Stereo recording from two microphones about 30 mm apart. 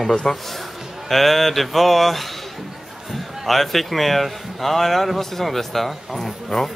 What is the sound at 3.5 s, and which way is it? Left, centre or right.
Speech, centre.